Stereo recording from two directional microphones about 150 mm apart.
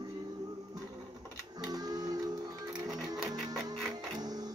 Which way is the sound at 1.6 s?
25° right (ahead or behind).